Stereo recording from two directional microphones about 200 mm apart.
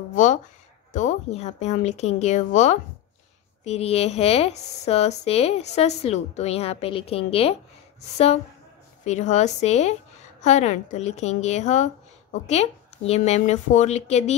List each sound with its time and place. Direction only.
0.1 s speech: 40° left (ahead or behind)
9.0 s speech: 35° left (ahead or behind)